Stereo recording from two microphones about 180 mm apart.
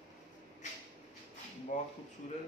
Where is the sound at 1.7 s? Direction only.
45° left (ahead or behind).